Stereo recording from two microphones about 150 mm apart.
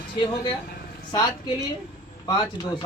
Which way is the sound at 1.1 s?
30° left (ahead or behind).